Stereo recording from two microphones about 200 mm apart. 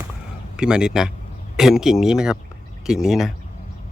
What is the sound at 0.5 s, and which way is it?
Speech, 5° right (ahead or behind).